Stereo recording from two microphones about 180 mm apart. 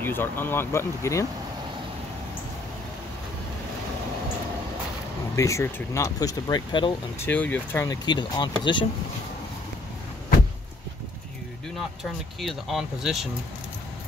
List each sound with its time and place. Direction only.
0.0 s speech: 10° left (ahead or behind)
5.3 s speech: 15° left (ahead or behind)
7.2 s speech: 10° left (ahead or behind); by 8.8 s 25° left (ahead or behind)
12.0 s speech: centre (ahead or behind)